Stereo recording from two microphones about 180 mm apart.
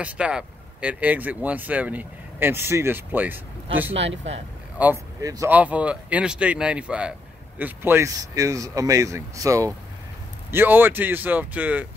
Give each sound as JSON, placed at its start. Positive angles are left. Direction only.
{"t": 0.0, "sound": "speech", "side_deg": -5}
{"t": 4.8, "sound": "speech", "side_deg": -10}
{"t": 5.2, "sound": "speech", "side_deg": -20}
{"t": 5.5, "sound": "speech", "side_deg": -10}